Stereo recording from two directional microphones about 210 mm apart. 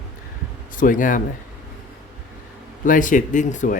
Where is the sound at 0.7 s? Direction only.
40° left (ahead or behind).